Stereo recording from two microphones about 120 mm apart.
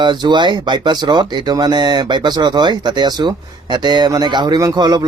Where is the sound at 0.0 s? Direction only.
40° right (ahead or behind).